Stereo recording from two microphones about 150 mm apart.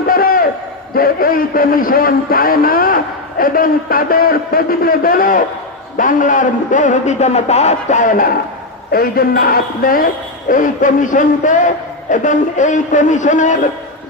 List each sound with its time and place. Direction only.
0.1 s a sound: 75° left (ahead or behind)
0.9 s a man's voice: 75° left (ahead or behind)
8.9 s a man's voice: 85° left; by 13.7 s 55° left (ahead or behind)